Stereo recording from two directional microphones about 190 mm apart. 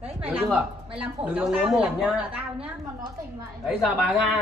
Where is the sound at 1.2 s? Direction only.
5° right (ahead or behind).